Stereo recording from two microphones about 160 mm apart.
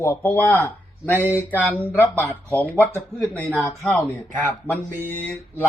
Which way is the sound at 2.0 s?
10° left (ahead or behind).